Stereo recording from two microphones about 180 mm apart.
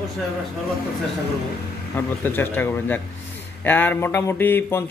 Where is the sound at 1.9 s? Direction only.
10° left (ahead or behind).